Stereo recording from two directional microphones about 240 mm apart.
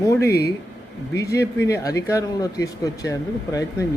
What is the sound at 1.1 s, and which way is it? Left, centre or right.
Speech, centre.